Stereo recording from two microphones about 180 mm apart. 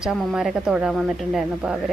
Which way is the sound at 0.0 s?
5° right (ahead or behind).